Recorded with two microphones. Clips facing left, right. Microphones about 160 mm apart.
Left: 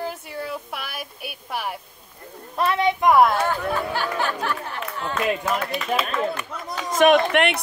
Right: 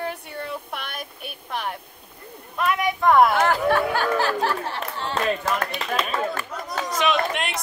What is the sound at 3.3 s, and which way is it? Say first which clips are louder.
Speech: right 3 dB; 80° right.